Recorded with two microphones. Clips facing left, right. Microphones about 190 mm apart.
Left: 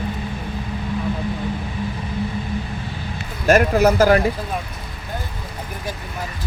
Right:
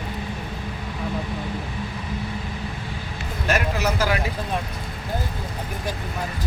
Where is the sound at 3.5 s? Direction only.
50° left (ahead or behind).